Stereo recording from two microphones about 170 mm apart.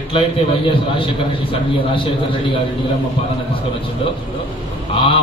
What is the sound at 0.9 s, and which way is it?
Speech, 30° left (ahead or behind).